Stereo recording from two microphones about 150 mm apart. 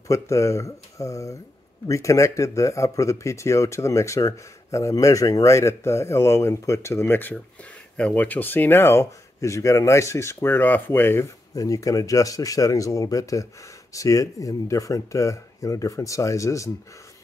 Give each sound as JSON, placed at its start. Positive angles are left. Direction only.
{"t": 0.1, "sound": "speech", "side_deg": 20}